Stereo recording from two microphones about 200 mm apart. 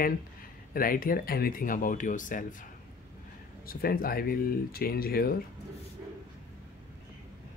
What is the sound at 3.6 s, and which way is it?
Speech, 45° left (ahead or behind).